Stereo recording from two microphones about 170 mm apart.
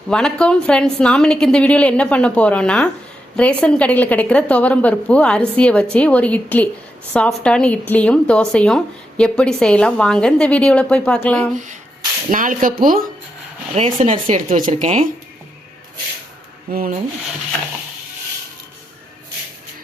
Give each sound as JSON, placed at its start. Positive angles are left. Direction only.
{"t": 0.1, "sound": "a woman's voice", "side_deg": 5}
{"t": 11.5, "sound": "speech", "side_deg": -45}
{"t": 13.7, "sound": "speech", "side_deg": -40}
{"t": 16.7, "sound": "speech", "side_deg": -60}